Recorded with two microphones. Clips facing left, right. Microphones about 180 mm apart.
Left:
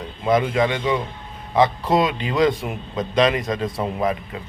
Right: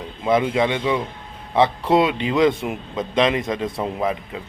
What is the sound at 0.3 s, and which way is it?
Speech, 25° right (ahead or behind).